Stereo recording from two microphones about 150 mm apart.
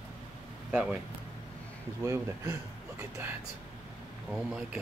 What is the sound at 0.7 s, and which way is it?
Speech, 5° right (ahead or behind).